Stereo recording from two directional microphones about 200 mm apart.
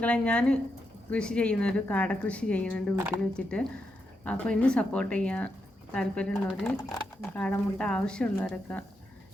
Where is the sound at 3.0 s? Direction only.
15° right (ahead or behind).